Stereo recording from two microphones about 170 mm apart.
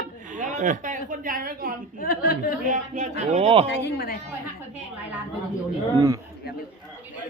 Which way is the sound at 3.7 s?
75° left (ahead or behind).